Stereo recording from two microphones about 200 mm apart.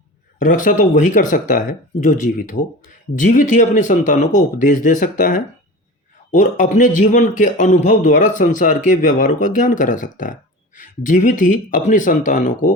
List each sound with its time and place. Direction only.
0.3 s a man's voice: 40° left (ahead or behind)